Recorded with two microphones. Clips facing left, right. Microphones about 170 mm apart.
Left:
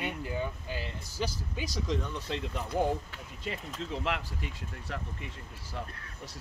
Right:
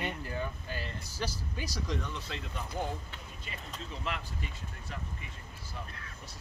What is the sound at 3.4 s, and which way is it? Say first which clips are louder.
Speech: left 8 dB; 80° left.